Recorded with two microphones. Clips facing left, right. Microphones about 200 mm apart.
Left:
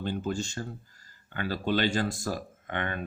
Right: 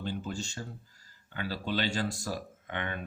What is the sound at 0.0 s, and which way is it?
Speech, 55° left (ahead or behind).